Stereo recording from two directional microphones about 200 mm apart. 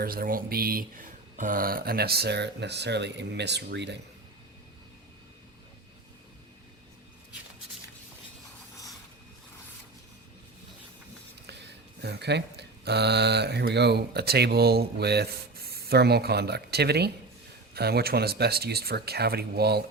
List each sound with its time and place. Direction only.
0.0 s speech: 45° right (ahead or behind)
12.0 s speech: 55° right (ahead or behind)